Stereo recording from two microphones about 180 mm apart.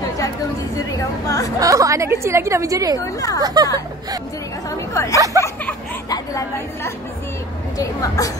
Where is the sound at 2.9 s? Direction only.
20° left (ahead or behind).